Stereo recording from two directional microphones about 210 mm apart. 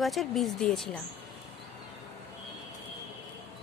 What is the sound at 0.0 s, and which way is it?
Speech, centre (ahead or behind).